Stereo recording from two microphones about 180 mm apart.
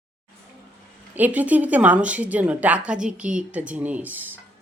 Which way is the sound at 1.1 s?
10° right (ahead or behind).